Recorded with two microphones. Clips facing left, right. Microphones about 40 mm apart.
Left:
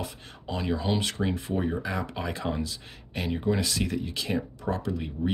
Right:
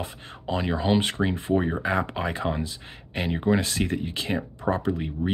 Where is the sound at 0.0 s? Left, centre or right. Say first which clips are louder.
Right 3 dB; right.